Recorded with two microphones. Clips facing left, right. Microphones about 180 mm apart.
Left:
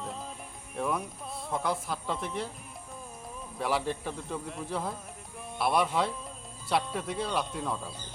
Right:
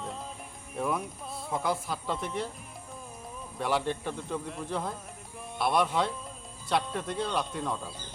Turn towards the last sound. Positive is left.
turn(degrees=0)  # may be behind; listen again after turning